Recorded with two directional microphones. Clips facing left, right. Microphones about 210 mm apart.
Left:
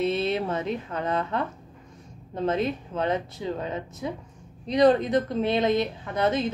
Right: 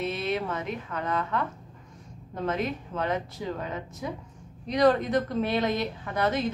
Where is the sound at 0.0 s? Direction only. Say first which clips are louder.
Left 4 dB; 25° left (ahead or behind).